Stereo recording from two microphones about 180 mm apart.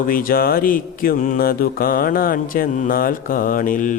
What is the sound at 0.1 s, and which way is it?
Mantra, 50° left (ahead or behind).